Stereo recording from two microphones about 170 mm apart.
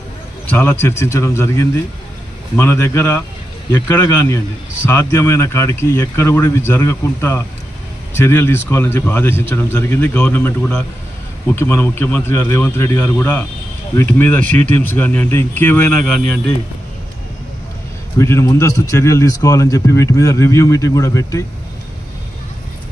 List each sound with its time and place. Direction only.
0.5 s a man's voice: 10° left (ahead or behind)
18.1 s a man's voice: 15° left (ahead or behind)